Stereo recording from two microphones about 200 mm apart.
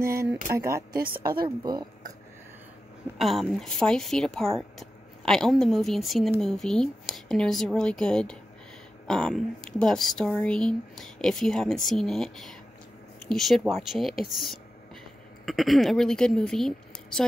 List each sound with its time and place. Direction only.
0.0 s speech: 15° right (ahead or behind)
0.9 s a woman's voice: 45° right (ahead or behind)
1.6 s speech: 20° right (ahead or behind)
3.2 s a woman's voice: centre (ahead or behind)